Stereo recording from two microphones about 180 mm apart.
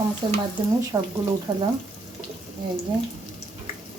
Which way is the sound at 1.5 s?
30° right (ahead or behind).